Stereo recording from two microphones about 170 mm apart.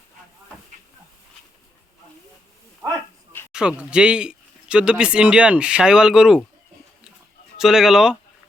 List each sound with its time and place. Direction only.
2.8 s a sound: 15° right (ahead or behind)
3.5 s speech: 5° right (ahead or behind)
7.6 s speech: 5° right (ahead or behind)